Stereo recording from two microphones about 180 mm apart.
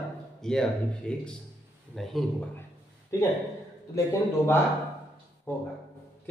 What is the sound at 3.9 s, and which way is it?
A man's voice, 15° left (ahead or behind).